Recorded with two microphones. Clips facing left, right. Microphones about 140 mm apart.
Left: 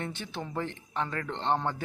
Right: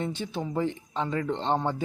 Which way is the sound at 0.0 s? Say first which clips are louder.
Right 5 dB; 15° right (ahead or behind).